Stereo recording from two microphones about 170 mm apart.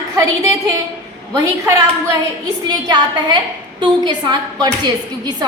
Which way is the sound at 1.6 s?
15° right (ahead or behind).